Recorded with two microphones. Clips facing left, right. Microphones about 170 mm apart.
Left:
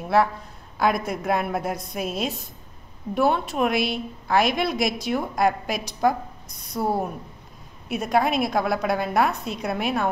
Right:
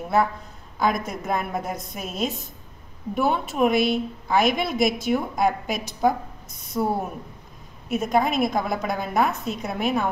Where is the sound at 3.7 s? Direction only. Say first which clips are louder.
Right 4 dB; 50° right (ahead or behind).